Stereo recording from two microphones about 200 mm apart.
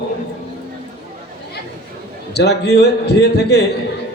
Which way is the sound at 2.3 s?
55° left (ahead or behind).